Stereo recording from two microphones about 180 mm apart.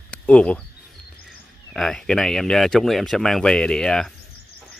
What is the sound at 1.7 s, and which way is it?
Speech, 5° left (ahead or behind).